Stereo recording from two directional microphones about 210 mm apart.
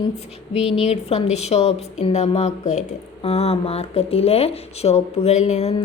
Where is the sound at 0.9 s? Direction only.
30° left (ahead or behind).